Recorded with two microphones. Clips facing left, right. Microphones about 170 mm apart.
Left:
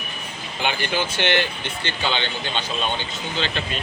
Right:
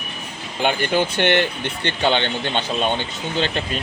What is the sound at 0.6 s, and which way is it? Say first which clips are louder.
Speech: right 5 dB; 50° right (ahead or behind).